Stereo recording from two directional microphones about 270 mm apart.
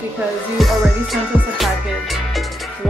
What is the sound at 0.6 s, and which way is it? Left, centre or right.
Music, centre.